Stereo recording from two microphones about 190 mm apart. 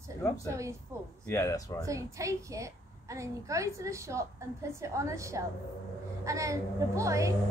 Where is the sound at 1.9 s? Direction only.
15° right (ahead or behind).